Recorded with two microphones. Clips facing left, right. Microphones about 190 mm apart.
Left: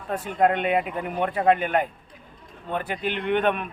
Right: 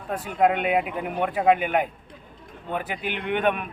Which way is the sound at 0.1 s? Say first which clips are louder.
Even; 5° right (ahead or behind).